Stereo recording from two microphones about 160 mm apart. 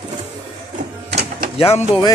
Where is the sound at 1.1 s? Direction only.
90° right.